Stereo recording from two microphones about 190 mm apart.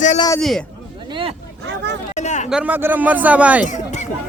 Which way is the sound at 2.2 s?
40° left (ahead or behind).